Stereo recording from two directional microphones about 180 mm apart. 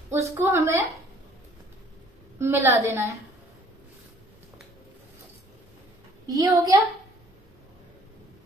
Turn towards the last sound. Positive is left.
turn(degrees=-20)  # may be behind; listen again after turning